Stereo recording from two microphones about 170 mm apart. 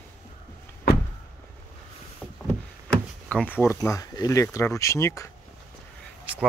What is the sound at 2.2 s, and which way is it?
Door, 5° left (ahead or behind).